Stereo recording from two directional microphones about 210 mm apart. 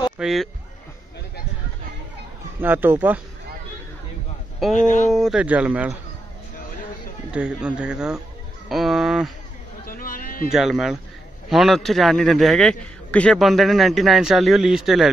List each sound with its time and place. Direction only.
0.2 s a man's voice: centre (ahead or behind)
2.6 s speech: 10° right (ahead or behind)
4.7 s speech: 35° left (ahead or behind)
5.1 s a man's voice: centre (ahead or behind)
7.3 s a man's voice: 5° right (ahead or behind)
9.8 s a sound: 40° left (ahead or behind)
10.5 s a man's voice: centre (ahead or behind)